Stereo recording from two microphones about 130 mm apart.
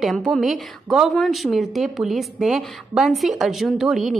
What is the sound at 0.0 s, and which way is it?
A woman's voice, centre (ahead or behind).